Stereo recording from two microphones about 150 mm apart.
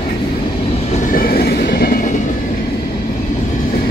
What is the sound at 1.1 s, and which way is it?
Train, 75° left (ahead or behind).